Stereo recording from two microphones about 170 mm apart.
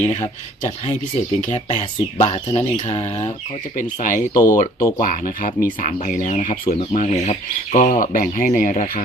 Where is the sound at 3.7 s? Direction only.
50° left (ahead or behind).